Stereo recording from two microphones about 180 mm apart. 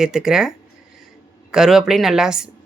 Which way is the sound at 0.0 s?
5° right (ahead or behind).